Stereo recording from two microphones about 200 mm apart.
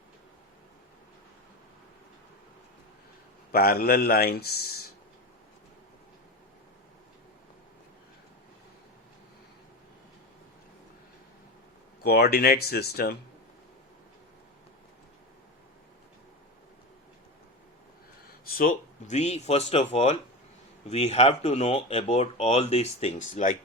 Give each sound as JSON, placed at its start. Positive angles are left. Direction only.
{"t": 3.5, "sound": "speech", "side_deg": 50}
{"t": 12.0, "sound": "speech", "side_deg": 55}
{"t": 18.3, "sound": "speech", "side_deg": 45}